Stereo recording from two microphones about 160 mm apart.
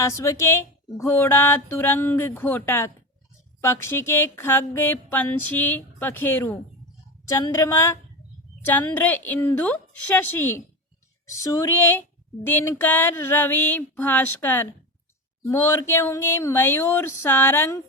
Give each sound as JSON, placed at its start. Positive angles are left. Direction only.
{"t": 0.0, "sound": "speech", "side_deg": 20}